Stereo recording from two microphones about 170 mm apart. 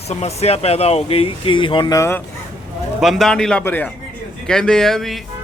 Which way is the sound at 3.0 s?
Centre (ahead or behind).